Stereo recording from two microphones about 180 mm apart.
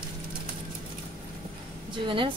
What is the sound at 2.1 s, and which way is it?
Speech, 30° right (ahead or behind).